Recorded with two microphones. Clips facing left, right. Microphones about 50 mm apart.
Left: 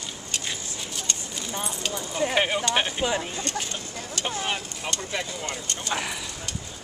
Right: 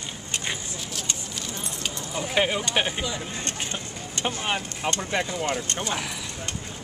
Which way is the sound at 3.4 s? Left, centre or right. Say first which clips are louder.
Left 1 dB; right.